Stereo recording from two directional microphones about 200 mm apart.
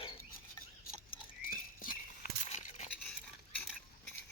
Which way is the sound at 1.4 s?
45° left (ahead or behind).